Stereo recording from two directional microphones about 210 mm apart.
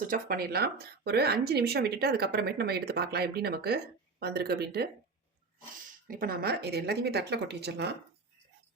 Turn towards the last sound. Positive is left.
turn(degrees=-50)  # may be behind; listen again after turning